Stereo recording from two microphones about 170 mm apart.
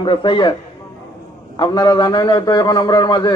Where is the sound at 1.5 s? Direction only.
25° left (ahead or behind).